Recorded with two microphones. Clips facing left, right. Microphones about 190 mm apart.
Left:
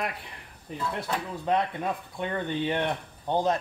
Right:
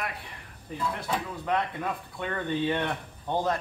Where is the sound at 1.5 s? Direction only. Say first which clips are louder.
Left 2 dB; 20° left (ahead or behind).